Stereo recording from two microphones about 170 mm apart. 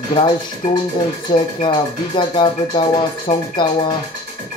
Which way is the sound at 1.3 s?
30° left (ahead or behind).